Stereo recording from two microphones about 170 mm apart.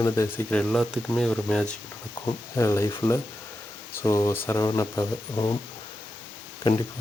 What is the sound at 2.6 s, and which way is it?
Speech, 15° left (ahead or behind).